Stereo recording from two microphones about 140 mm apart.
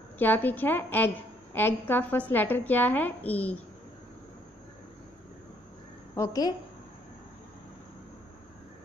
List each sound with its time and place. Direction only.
0.2 s a woman's voice: 15° left (ahead or behind)
6.1 s a woman's voice: 25° left (ahead or behind)